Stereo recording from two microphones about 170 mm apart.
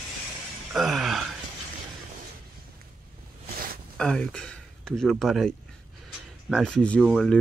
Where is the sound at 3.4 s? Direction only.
60° right (ahead or behind).